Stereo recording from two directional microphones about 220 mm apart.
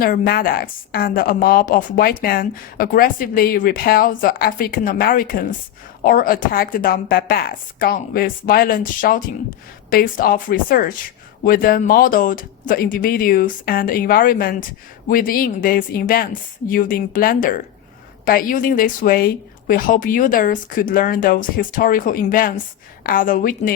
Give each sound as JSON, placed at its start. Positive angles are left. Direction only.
{"t": 0.0, "sound": "a woman's voice", "side_deg": 40}